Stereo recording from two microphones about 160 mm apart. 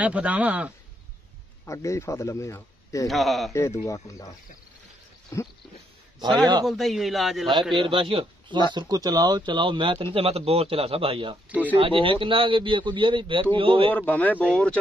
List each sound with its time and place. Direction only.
0.0 s speech: 10° right (ahead or behind)
1.7 s speech: 20° left (ahead or behind)
3.1 s a man's voice: centre (ahead or behind)
3.5 s speech: 15° left (ahead or behind)
6.1 s speech: 25° right (ahead or behind)
6.6 s a man's voice: centre (ahead or behind)
7.7 s a man's voice: 30° right (ahead or behind)
13.9 s speech: 10° left (ahead or behind)